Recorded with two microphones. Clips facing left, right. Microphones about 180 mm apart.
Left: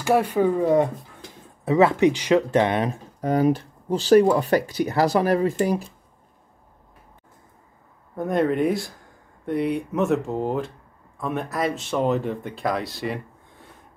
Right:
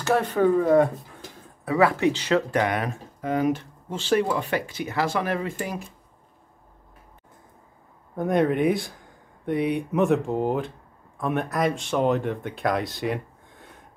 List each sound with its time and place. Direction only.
0.0 s speech: 10° left (ahead or behind); by 3.0 s 25° left (ahead or behind)
3.2 s speech: 40° left (ahead or behind)
8.2 s speech: centre (ahead or behind)